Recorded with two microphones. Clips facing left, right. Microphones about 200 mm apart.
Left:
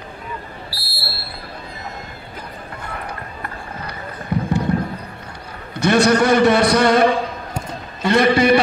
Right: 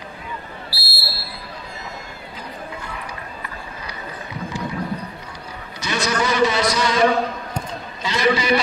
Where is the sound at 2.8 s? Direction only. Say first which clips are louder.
Left 3 dB; 55° left (ahead or behind).